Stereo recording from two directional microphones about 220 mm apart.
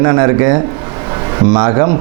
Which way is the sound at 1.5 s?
20° right (ahead or behind).